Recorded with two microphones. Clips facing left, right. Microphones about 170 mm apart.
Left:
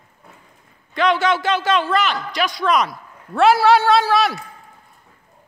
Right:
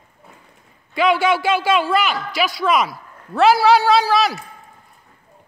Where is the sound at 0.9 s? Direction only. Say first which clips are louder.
Right 1 dB; 10° right (ahead or behind).